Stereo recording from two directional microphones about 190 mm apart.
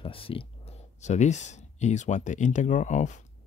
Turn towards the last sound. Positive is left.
turn(degrees=40)  # may be behind; listen again after turning